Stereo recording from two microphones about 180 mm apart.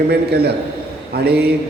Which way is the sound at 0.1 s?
60° right (ahead or behind).